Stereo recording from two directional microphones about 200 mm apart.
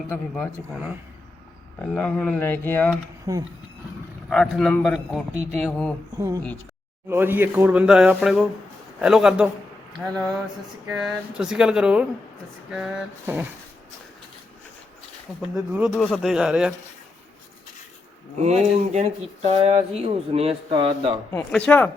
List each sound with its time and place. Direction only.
0.1 s speech: 5° left (ahead or behind)
1.9 s a man's voice: 5° left (ahead or behind)
3.3 s speech: 20° right (ahead or behind)
4.3 s a man's voice: centre (ahead or behind)
6.1 s a man's voice: 15° right (ahead or behind)
15.4 s a man's voice: 5° right (ahead or behind)
18.4 s speech: 35° right (ahead or behind)
21.7 s speech: 5° left (ahead or behind)